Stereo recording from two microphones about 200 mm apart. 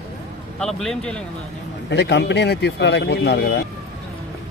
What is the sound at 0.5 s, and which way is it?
Speech, centre (ahead or behind).